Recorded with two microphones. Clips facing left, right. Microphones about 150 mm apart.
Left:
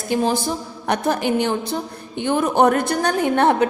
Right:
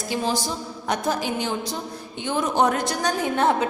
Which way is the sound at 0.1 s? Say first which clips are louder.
Left 6 dB; 55° left (ahead or behind).